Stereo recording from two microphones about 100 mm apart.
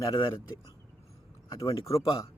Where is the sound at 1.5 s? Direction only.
35° left (ahead or behind).